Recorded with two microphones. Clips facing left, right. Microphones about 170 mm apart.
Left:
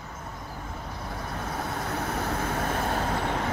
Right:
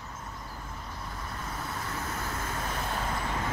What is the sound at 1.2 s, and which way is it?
Vehicle, 65° left (ahead or behind).